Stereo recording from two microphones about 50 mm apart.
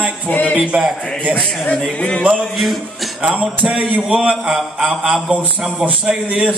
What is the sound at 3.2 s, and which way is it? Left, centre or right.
Music, right.